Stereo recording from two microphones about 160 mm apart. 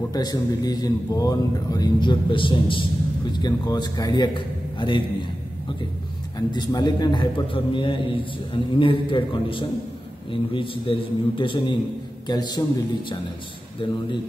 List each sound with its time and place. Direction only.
0.1 s speech: 25° left (ahead or behind)
6.3 s a man's voice: 25° left (ahead or behind)
13.8 s a man's voice: 30° left (ahead or behind)